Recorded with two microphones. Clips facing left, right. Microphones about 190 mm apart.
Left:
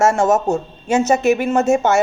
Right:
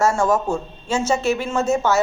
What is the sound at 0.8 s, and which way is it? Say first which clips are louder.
Speech: left 6 dB; 20° left (ahead or behind).